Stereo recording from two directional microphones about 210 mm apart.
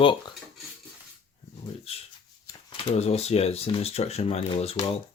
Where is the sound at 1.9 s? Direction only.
30° left (ahead or behind).